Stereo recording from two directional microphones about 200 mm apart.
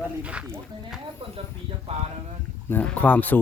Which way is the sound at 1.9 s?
30° right (ahead or behind).